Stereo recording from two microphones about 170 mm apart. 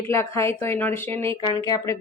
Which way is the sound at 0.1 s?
15° left (ahead or behind).